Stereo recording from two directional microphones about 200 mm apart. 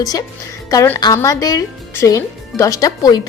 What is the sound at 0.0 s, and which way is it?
Speech, 20° left (ahead or behind).